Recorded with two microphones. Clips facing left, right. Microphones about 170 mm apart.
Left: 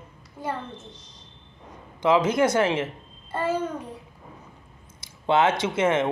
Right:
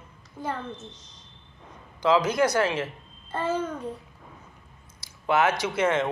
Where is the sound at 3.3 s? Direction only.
10° left (ahead or behind).